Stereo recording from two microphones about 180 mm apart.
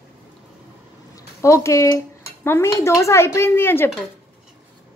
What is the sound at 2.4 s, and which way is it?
A woman's voice, 15° left (ahead or behind).